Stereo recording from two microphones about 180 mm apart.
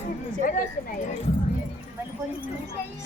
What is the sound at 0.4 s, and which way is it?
Speech, 50° left (ahead or behind).